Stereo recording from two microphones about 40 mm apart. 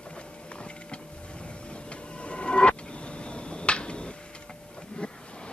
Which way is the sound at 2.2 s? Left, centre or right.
Left.